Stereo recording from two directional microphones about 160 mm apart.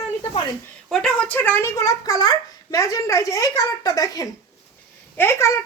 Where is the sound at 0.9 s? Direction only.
5° left (ahead or behind).